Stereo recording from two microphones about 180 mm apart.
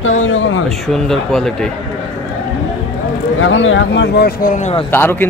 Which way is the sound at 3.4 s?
90° left.